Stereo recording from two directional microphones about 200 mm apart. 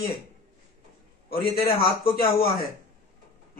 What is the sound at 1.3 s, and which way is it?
Speech, 50° left (ahead or behind).